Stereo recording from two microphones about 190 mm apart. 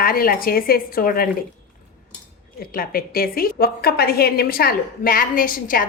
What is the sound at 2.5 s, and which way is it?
A woman's voice, 50° left (ahead or behind).